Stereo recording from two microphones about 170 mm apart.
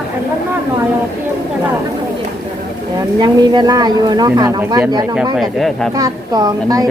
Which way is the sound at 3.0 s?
25° right (ahead or behind).